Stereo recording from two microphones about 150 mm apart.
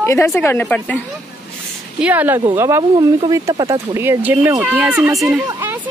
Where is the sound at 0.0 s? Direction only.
20° left (ahead or behind).